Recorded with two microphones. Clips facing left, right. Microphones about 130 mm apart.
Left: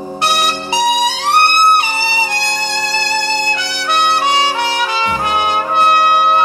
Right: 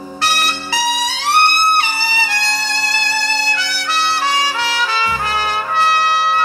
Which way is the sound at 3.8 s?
55° left (ahead or behind).